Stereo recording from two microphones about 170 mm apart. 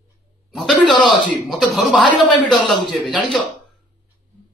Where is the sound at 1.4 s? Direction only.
Centre (ahead or behind).